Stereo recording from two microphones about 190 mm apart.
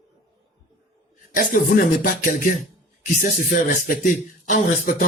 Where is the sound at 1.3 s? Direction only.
45° left (ahead or behind).